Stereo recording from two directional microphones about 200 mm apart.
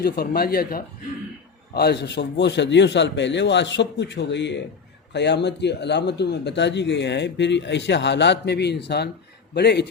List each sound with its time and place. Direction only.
0.0 s speech: 50° left (ahead or behind)